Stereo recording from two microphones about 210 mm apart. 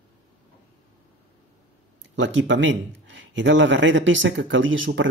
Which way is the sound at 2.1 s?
65° right (ahead or behind).